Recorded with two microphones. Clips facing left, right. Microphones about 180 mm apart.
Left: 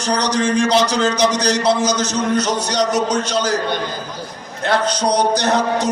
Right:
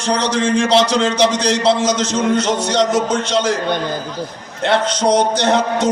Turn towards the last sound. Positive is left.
turn(degrees=-25)  # may be behind; listen again after turning